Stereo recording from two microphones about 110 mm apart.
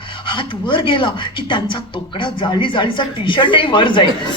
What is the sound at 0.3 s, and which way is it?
A man's voice, 45° left (ahead or behind).